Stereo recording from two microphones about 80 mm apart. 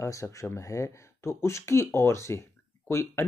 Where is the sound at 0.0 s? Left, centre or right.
Left.